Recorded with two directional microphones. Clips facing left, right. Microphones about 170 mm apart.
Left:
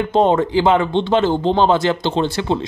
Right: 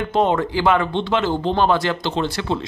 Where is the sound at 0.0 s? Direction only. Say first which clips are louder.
Left 4 dB; 25° left (ahead or behind).